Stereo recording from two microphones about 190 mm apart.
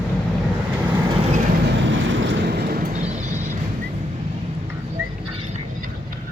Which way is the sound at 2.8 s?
35° right (ahead or behind).